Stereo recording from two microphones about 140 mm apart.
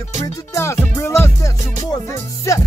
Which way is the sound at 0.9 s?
20° left (ahead or behind).